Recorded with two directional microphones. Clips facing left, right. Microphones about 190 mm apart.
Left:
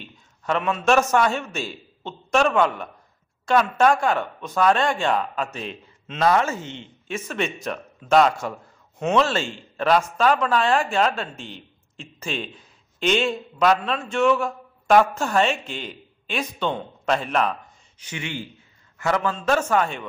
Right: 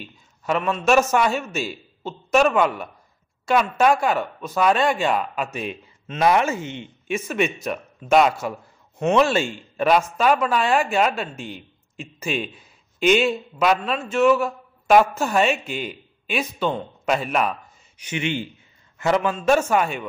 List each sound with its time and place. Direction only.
0.0 s a man's voice: 5° right (ahead or behind)